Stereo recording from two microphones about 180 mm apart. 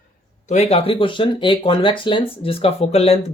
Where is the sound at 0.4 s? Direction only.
35° left (ahead or behind).